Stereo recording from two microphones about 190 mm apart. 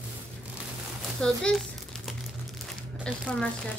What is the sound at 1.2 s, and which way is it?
Crumpling, centre (ahead or behind).